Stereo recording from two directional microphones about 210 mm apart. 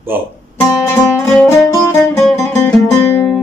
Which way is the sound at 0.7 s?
10° left (ahead or behind).